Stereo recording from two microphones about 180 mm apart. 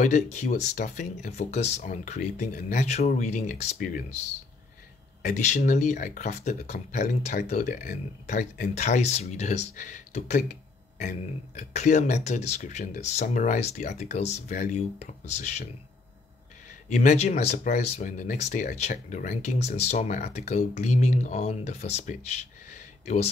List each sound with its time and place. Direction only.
0.0 s speech: 40° left (ahead or behind)
5.2 s speech: 40° left (ahead or behind)
16.9 s speech: 40° left (ahead or behind)